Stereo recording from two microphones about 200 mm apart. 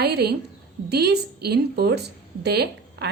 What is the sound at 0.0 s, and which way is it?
A woman's voice, 55° right (ahead or behind).